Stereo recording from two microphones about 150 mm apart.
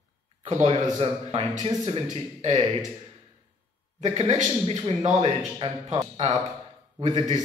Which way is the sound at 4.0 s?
50° right (ahead or behind).